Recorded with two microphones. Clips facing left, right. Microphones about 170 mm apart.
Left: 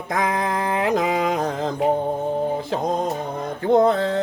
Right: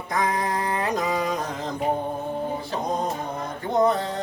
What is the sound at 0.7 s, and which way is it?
Music, 90° left.